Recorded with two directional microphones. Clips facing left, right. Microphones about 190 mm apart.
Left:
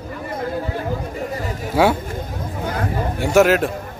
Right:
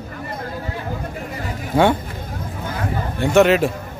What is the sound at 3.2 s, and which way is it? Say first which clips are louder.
Speech: right 1 dB; 5° left (ahead or behind).